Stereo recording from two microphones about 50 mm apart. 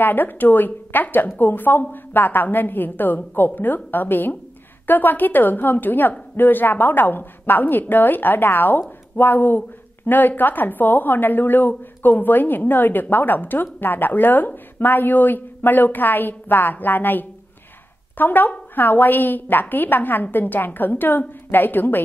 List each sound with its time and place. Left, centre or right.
0.0 s a woman's voice: left